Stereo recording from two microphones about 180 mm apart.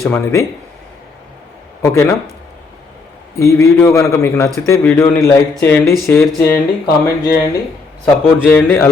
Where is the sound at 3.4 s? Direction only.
15° left (ahead or behind).